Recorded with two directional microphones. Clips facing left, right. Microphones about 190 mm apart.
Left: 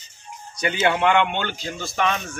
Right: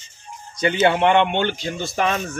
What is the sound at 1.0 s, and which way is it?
Speech, 25° right (ahead or behind).